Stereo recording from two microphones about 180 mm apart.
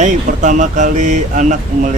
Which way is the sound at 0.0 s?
40° right (ahead or behind).